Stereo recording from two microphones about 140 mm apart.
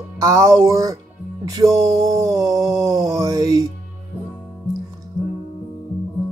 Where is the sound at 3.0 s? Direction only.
25° right (ahead or behind).